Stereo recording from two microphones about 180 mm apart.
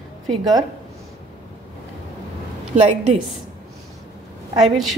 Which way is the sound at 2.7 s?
40° right (ahead or behind).